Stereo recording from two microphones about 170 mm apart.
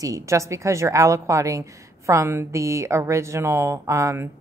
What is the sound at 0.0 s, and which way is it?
Speech, 20° right (ahead or behind).